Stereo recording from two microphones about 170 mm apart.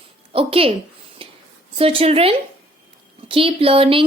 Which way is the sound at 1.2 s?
30° right (ahead or behind).